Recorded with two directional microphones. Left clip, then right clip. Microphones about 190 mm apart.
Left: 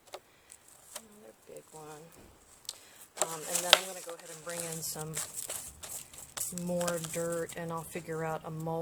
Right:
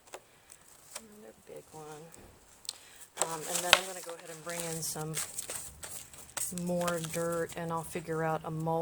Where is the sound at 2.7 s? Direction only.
15° right (ahead or behind).